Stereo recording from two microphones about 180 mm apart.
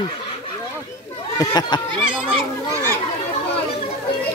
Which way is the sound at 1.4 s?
20° left (ahead or behind).